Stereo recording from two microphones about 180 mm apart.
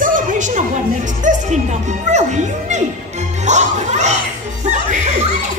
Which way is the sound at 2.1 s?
40° right (ahead or behind).